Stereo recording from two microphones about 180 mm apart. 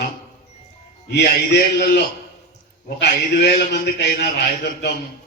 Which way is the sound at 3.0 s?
60° left (ahead or behind).